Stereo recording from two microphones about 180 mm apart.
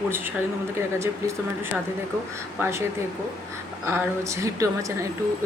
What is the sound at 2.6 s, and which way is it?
Speech, 15° right (ahead or behind).